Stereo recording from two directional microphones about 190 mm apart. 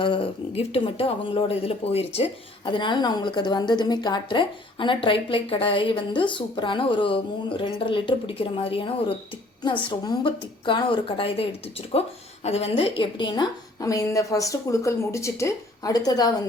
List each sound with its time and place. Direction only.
0.0 s a woman's voice: 25° left (ahead or behind)
12.5 s a woman's voice: 30° left (ahead or behind)